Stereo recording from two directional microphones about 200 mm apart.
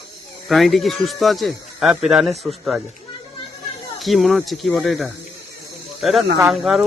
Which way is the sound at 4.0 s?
Centre (ahead or behind).